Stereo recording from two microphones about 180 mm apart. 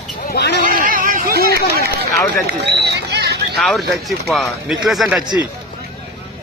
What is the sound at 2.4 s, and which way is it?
Run, 65° right (ahead or behind).